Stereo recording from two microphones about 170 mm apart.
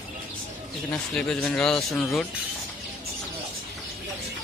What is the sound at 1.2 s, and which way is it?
Speech, 5° left (ahead or behind).